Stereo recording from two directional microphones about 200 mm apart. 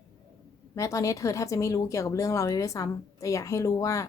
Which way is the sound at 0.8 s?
15° left (ahead or behind).